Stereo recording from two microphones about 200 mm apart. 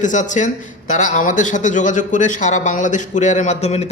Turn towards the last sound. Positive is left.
turn(degrees=30)  # may be behind; listen again after turning